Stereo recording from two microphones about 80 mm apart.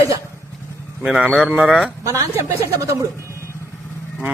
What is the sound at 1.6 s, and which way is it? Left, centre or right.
Speech, centre.